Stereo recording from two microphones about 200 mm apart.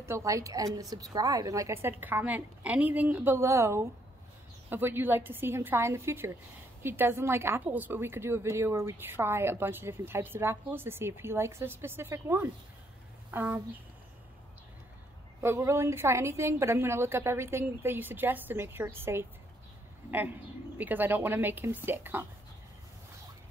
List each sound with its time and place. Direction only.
0.0 s a woman's voice: 15° right (ahead or behind)
15.4 s a woman's voice: 15° right (ahead or behind)